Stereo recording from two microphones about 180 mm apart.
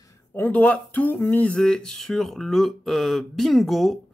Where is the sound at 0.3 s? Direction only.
10° left (ahead or behind).